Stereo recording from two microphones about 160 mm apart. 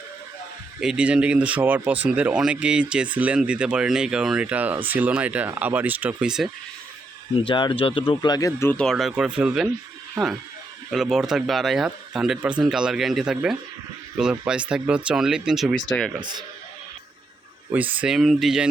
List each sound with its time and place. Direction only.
0.8 s speech: 5° right (ahead or behind)
7.3 s speech: 30° left (ahead or behind); by 9.6 s 5° right (ahead or behind)
10.9 s speech: 5° right (ahead or behind)
17.9 s speech: 5° right (ahead or behind)